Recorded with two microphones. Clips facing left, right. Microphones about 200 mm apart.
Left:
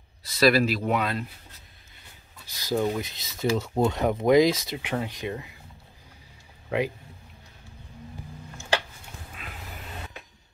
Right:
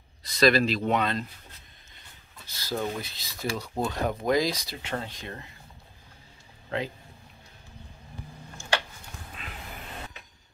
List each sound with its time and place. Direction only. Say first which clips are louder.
0.2 s speech: left 1 dB; 5° left (ahead or behind)
2.4 s speech: left 5 dB; 15° left (ahead or behind)
9.4 s a sound: left 1 dB; 5° left (ahead or behind)